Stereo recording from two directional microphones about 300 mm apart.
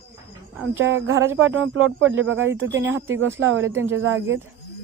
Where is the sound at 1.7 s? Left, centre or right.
Right.